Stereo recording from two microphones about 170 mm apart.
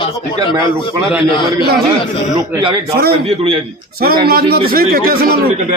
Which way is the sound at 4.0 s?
60° right (ahead or behind).